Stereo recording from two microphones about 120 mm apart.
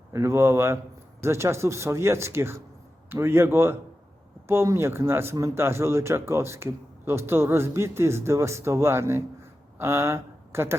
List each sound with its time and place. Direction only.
0.1 s speech: 25° right (ahead or behind)